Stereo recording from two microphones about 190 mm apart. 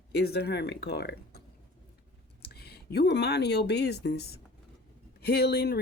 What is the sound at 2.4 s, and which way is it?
Speech, 55° left (ahead or behind).